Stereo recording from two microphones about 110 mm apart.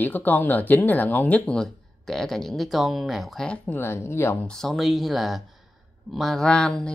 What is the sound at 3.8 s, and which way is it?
Speech, 20° left (ahead or behind).